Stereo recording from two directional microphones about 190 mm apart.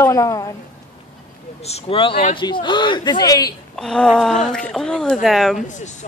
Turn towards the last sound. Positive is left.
turn(degrees=40)  # may be behind; listen again after turning